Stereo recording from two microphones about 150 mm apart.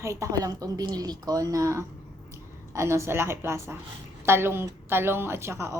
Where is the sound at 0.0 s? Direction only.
20° right (ahead or behind).